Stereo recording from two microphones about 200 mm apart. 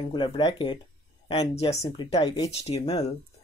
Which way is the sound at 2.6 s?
30° left (ahead or behind).